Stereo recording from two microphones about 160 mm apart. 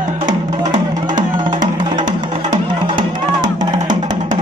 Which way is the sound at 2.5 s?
30° right (ahead or behind).